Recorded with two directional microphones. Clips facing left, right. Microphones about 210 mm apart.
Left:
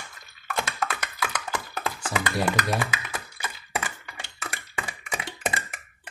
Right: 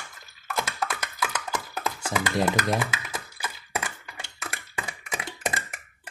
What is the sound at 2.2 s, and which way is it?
Speech, 20° right (ahead or behind).